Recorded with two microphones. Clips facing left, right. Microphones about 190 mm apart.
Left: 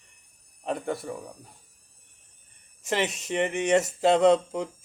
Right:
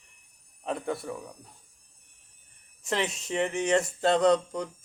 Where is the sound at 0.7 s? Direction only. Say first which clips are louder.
Left 2 dB; centre (ahead or behind).